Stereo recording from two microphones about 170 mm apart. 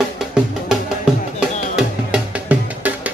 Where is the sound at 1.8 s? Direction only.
5° right (ahead or behind).